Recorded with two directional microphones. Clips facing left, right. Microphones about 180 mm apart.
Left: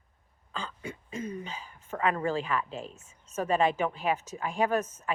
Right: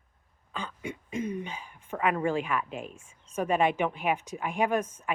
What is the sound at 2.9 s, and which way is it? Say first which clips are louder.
Speech: right 1 dB; 10° right (ahead or behind).